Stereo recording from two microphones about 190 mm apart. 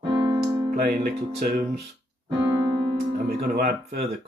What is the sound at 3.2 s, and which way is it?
Speech, 55° right (ahead or behind).